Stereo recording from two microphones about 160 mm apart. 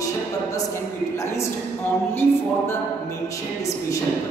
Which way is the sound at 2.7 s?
20° left (ahead or behind).